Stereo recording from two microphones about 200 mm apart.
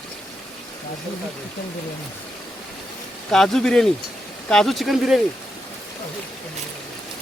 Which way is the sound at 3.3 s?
Centre (ahead or behind).